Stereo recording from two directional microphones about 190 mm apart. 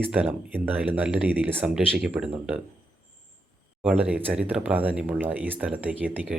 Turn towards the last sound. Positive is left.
turn(degrees=-10)  # may be behind; listen again after turning